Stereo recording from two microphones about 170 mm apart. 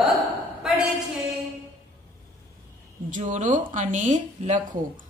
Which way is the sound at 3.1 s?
45° right (ahead or behind).